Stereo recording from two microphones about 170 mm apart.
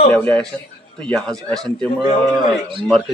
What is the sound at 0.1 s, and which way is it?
A man's voice, 5° left (ahead or behind).